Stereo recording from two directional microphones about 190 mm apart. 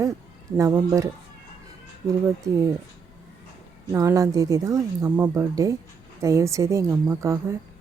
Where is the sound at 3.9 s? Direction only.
15° right (ahead or behind).